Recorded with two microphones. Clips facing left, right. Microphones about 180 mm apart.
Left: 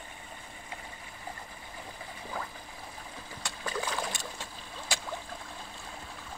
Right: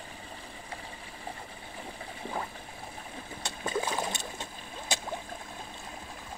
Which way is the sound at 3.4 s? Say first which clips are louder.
Right 3 dB; 25° right (ahead or behind).